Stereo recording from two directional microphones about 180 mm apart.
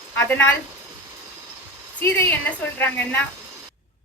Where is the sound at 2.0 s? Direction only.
10° left (ahead or behind).